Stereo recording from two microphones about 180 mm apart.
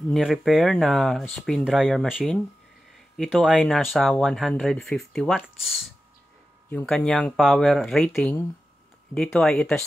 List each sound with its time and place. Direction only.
0.1 s speech: centre (ahead or behind)